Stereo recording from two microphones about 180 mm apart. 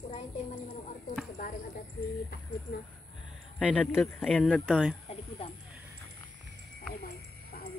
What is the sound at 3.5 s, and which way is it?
Speech, 5° left (ahead or behind).